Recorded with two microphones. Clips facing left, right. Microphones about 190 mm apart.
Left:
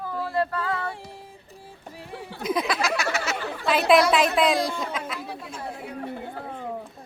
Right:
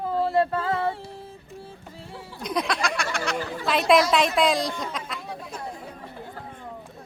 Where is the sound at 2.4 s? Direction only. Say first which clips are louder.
Left 1 dB; 5° left (ahead or behind).